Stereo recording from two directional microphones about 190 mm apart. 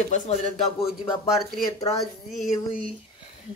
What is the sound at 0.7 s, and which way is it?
Speech, 30° left (ahead or behind).